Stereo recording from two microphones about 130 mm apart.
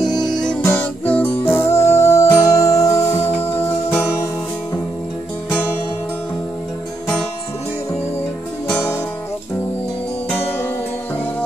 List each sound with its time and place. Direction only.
0.2 s music: 5° left (ahead or behind)
0.7 s music: 15° left (ahead or behind)
8.6 s music: 15° left (ahead or behind)